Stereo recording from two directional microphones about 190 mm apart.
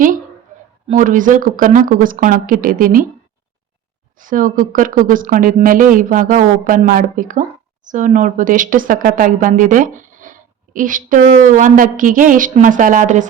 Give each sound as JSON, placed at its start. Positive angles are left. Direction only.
{"t": 0.9, "sound": "speech", "side_deg": -45}
{"t": 4.2, "sound": "speech", "side_deg": -45}